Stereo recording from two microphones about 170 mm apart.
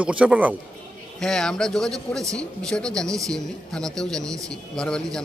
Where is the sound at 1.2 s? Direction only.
5° left (ahead or behind).